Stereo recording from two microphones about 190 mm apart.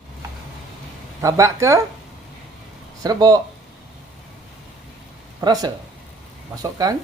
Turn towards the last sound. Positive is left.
turn(degrees=-20)  # may be behind; listen again after turning